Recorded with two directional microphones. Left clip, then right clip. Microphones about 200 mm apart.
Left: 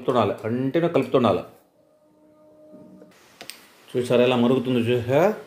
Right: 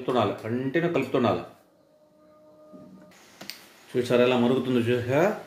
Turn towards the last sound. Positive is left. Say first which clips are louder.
# left 4 dB
turn(degrees=25)  # may be behind; listen again after turning